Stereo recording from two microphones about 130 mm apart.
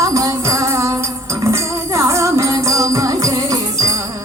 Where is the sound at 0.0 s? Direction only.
25° right (ahead or behind).